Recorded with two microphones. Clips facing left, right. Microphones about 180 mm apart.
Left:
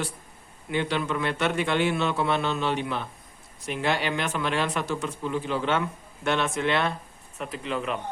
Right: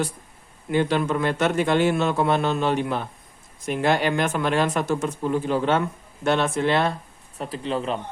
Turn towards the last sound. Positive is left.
turn(degrees=-30)  # may be behind; listen again after turning